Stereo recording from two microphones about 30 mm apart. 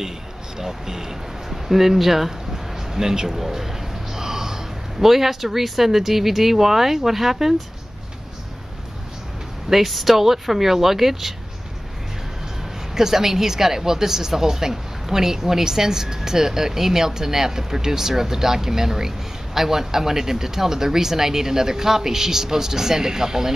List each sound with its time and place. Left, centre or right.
0.6 s a woman's voice: centre
1.5 s a sound: centre
5.0 s a woman's voice: centre
9.7 s a woman's voice: centre
12.9 s a woman's voice: centre